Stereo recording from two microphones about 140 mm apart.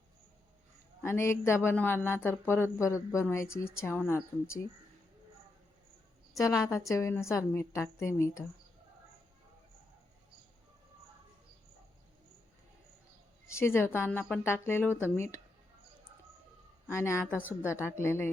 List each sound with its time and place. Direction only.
1.0 s speech: 20° left (ahead or behind)
6.7 s speech: 20° left (ahead or behind)
13.5 s speech: 15° left (ahead or behind)
16.9 s speech: 20° left (ahead or behind)